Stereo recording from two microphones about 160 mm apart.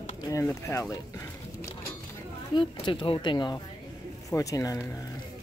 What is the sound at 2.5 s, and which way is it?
Speech, 30° left (ahead or behind).